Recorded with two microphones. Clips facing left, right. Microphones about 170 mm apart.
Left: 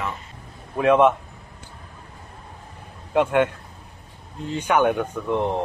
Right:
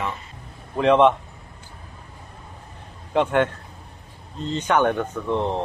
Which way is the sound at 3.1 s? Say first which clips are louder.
Left 1 dB; 10° left (ahead or behind).